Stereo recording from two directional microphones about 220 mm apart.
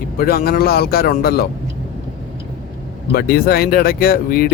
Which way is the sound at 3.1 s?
45° left (ahead or behind).